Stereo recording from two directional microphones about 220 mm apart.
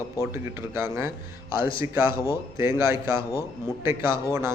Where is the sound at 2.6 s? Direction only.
10° right (ahead or behind).